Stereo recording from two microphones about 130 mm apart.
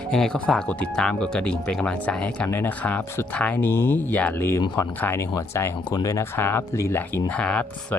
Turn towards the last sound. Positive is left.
turn(degrees=10)  # may be behind; listen again after turning